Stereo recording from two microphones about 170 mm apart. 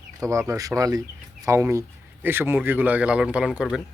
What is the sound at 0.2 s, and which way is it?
Speech, 20° right (ahead or behind).